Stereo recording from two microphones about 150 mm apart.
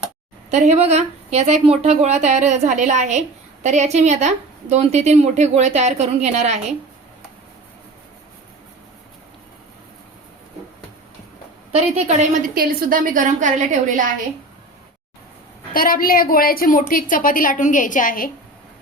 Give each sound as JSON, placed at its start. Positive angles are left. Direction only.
{"t": 0.5, "sound": "speech", "side_deg": -50}
{"t": 11.7, "sound": "speech", "side_deg": -45}
{"t": 12.5, "sound": "a woman's voice", "side_deg": -75}
{"t": 15.7, "sound": "a woman's voice", "side_deg": 65}